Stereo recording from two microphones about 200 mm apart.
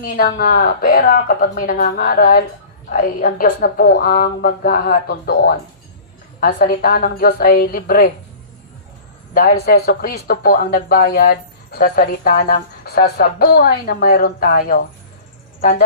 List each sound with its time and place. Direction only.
0.1 s speech: 50° left (ahead or behind)
9.3 s speech: 50° left (ahead or behind)